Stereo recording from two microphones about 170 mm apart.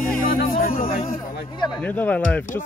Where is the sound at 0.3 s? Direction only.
60° left (ahead or behind).